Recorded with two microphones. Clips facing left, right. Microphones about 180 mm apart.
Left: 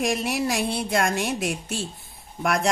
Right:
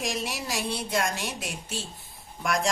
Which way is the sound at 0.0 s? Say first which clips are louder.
Left 7 dB; 60° left (ahead or behind).